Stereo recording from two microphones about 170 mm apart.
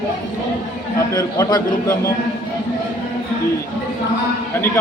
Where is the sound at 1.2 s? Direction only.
20° left (ahead or behind).